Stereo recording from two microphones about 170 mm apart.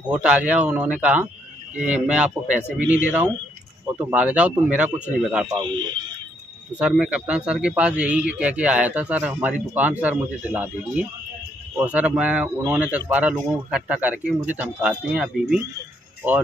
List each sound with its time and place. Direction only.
0.0 s speech: 5° right (ahead or behind)
2.8 s speech: 50° left (ahead or behind)
4.0 s speech: 10° right (ahead or behind)
5.6 s speech: 25° right (ahead or behind)
6.8 s speech: 5° right (ahead or behind)